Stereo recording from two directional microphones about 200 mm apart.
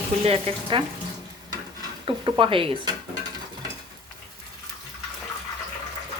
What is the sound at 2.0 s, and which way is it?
Speech, 25° right (ahead or behind).